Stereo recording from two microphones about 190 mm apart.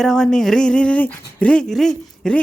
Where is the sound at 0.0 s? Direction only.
5° left (ahead or behind).